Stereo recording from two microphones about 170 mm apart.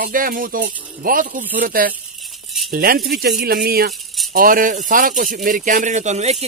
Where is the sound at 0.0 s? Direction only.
55° right (ahead or behind).